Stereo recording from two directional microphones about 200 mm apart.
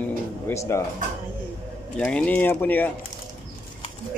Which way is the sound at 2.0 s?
5° left (ahead or behind).